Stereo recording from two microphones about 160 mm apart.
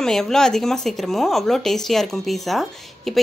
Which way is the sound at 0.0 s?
5° left (ahead or behind).